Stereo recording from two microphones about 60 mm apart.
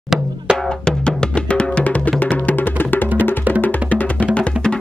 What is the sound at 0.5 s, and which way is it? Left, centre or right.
Music, centre.